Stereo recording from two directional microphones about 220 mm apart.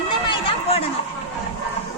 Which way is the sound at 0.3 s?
25° left (ahead or behind).